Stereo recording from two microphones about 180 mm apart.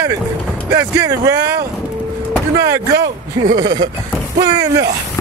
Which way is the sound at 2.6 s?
20° right (ahead or behind).